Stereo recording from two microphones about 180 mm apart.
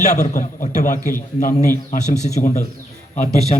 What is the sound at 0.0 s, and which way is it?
A man's voice, 40° left (ahead or behind).